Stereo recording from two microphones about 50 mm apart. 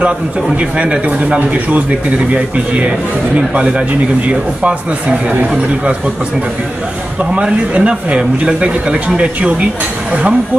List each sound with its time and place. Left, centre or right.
0.6 s speech: right
5.3 s speech: right
7.3 s speech: right